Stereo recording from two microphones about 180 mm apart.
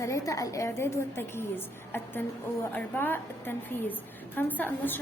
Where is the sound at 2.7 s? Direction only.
10° left (ahead or behind).